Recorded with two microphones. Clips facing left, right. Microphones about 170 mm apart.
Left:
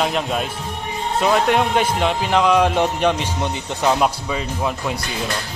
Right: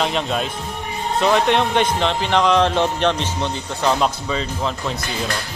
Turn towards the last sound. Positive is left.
turn(degrees=10)  # may be behind; listen again after turning